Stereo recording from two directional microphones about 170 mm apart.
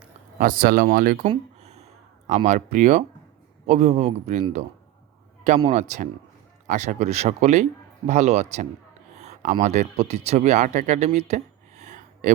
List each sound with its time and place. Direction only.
0.3 s speech: 55° right (ahead or behind)
1.3 s a sound: 40° right (ahead or behind)
2.2 s a man's voice: 45° right (ahead or behind)
5.6 s a man's voice: 40° right (ahead or behind)